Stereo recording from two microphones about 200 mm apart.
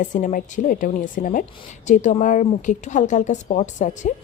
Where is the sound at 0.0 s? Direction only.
40° left (ahead or behind).